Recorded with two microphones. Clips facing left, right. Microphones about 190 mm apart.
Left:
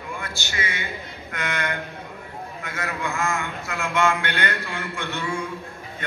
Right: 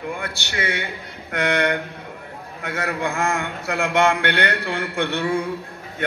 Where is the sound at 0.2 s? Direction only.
65° right (ahead or behind).